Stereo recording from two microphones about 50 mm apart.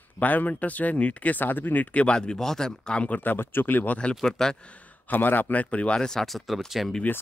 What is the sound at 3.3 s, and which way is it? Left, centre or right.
Speech, left.